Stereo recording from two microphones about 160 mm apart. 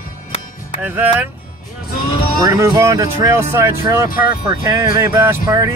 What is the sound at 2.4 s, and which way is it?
Speech, 20° right (ahead or behind).